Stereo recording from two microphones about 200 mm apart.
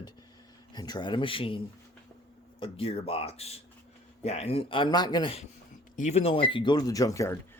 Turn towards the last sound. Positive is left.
turn(degrees=15)  # may be behind; listen again after turning